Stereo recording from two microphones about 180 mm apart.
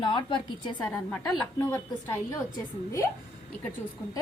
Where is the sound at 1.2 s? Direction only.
20° left (ahead or behind).